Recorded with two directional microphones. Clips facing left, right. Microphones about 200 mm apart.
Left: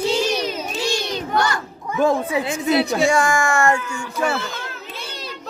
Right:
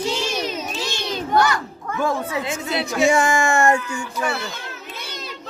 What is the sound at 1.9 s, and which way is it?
Speech, 15° left (ahead or behind).